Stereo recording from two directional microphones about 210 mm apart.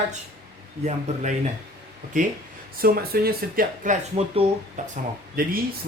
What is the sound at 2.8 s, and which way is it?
Speech, 45° right (ahead or behind).